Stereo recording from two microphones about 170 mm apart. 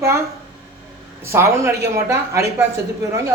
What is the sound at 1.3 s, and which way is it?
Speech, 15° right (ahead or behind).